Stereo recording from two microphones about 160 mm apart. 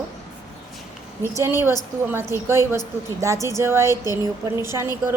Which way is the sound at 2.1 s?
15° right (ahead or behind).